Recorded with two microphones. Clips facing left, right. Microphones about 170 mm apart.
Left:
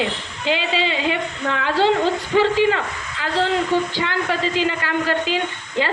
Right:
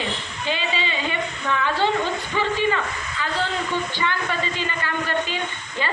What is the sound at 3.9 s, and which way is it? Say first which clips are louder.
A woman's voice: left 3 dB; 90° left.